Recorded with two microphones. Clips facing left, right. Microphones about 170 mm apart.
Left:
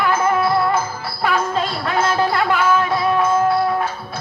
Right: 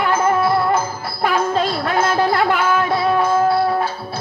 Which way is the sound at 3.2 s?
30° right (ahead or behind).